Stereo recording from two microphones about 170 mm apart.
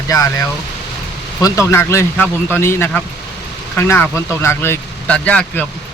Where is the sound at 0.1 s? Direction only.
20° left (ahead or behind).